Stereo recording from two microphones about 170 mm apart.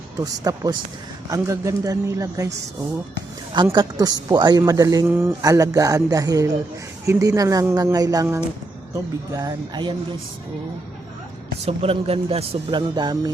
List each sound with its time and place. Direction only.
0.4 s a woman's voice: 20° right (ahead or behind)
11.6 s speech: 35° right (ahead or behind)